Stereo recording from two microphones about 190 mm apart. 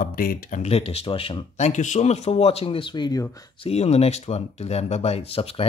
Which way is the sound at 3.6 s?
35° left (ahead or behind).